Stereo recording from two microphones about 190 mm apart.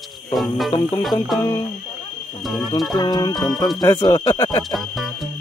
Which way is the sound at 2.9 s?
20° left (ahead or behind).